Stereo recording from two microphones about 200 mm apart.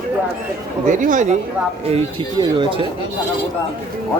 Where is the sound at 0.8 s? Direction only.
40° right (ahead or behind).